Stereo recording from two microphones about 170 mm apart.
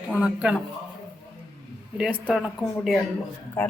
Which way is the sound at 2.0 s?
5° right (ahead or behind).